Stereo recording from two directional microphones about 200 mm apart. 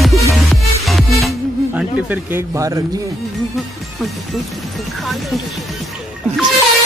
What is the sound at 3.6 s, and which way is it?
Speech, centre (ahead or behind).